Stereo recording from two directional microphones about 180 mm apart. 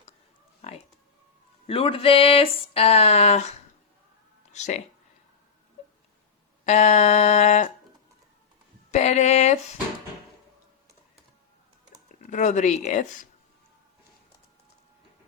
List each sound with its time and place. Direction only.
0.6 s a sound: 35° left (ahead or behind)
1.6 s speech: 30° left (ahead or behind)
4.5 s speech: 40° left (ahead or behind)
6.7 s speech: 40° left (ahead or behind)
8.9 s speech: 40° left (ahead or behind)
12.2 s speech: 40° left (ahead or behind)